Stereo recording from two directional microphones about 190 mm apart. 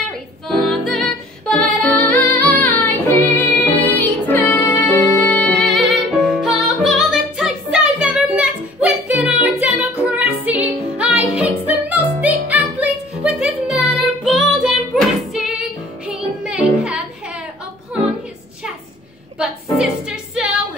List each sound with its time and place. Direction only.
0.5 s music: centre (ahead or behind)
19.3 s music: 5° right (ahead or behind)